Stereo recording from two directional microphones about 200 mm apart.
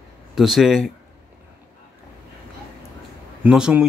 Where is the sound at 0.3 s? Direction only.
Centre (ahead or behind).